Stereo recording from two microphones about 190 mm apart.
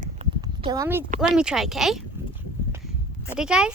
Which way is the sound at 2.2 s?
10° right (ahead or behind).